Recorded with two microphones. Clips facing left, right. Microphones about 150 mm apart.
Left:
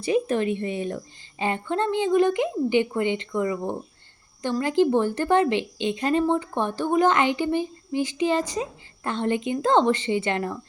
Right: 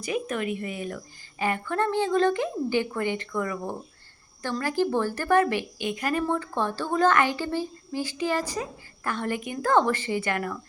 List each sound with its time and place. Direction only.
0.0 s a woman's voice: 30° left (ahead or behind)